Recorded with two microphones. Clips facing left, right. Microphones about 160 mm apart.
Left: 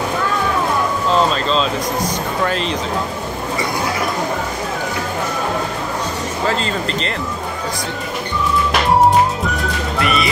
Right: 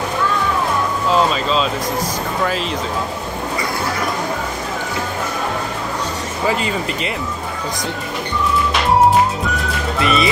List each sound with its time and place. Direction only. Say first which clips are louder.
1.1 s speech: even; 5° right (ahead or behind)
6.4 s speech: right 1 dB; 10° right (ahead or behind)
9.9 s music: right 2 dB; 20° right (ahead or behind)